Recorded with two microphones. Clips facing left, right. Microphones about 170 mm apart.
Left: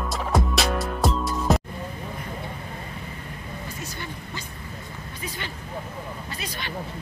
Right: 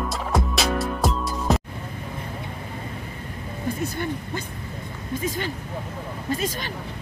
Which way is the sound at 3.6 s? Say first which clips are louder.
Right 13 dB; 55° right (ahead or behind).